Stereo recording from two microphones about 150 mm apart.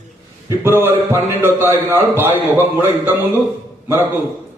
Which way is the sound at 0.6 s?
15° right (ahead or behind).